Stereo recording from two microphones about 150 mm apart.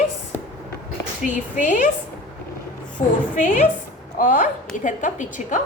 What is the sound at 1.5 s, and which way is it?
Speech, 60° left (ahead or behind).